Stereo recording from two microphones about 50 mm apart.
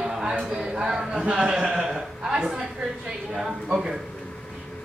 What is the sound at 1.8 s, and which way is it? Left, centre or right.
A woman's voice, centre.